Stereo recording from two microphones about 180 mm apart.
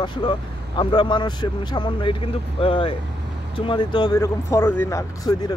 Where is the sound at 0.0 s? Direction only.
25° left (ahead or behind).